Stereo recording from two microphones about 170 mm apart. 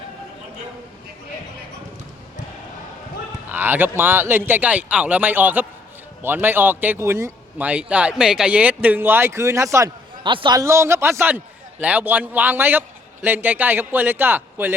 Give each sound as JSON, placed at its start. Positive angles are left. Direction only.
{"t": 3.5, "sound": "speech", "side_deg": -10}